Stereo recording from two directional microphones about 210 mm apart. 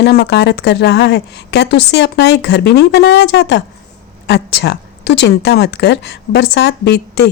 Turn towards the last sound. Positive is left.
turn(degrees=50)  # may be behind; listen again after turning